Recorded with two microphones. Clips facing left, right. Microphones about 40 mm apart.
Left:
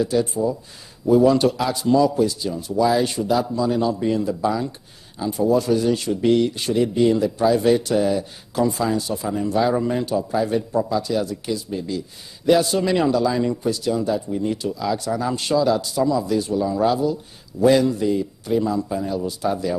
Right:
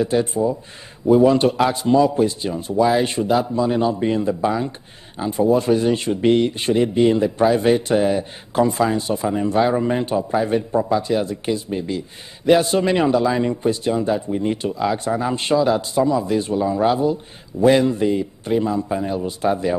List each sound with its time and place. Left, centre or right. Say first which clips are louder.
0.0 s a man's voice: right 2 dB; right